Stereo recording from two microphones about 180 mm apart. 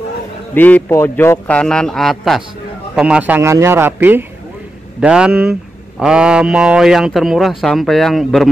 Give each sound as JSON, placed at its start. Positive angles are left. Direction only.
{"t": 0.6, "sound": "a man's voice", "side_deg": 10}